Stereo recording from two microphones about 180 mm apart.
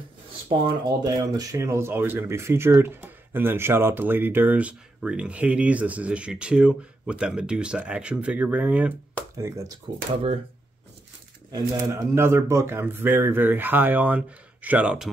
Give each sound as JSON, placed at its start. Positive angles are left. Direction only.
{"t": 0.5, "sound": "speech", "side_deg": -20}
{"t": 9.9, "sound": "speech", "side_deg": -25}
{"t": 11.5, "sound": "speech", "side_deg": -15}